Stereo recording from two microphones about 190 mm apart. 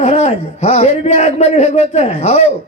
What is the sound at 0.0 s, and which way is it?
A man's voice, 35° left (ahead or behind).